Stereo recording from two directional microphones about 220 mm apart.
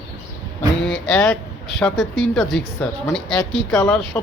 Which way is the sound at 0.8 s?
50° left (ahead or behind).